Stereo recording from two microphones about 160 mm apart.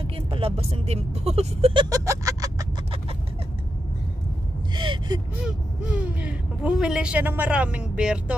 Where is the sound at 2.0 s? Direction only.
20° right (ahead or behind).